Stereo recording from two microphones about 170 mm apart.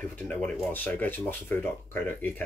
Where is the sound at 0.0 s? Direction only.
10° left (ahead or behind).